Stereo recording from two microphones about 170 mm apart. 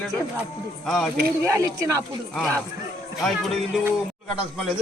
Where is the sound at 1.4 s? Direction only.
20° right (ahead or behind).